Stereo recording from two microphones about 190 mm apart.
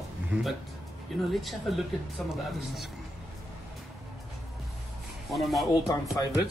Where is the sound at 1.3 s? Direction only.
Centre (ahead or behind).